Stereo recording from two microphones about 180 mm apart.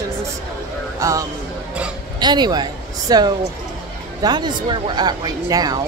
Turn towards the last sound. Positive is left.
turn(degrees=-20)  # may be behind; listen again after turning